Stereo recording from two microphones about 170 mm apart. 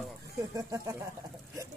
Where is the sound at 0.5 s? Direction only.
20° right (ahead or behind).